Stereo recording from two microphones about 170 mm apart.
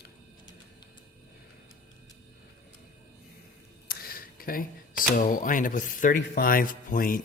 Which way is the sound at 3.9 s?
60° left (ahead or behind).